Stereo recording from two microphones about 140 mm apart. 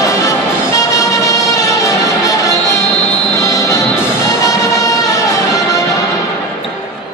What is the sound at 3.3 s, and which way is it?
Music, 25° left (ahead or behind).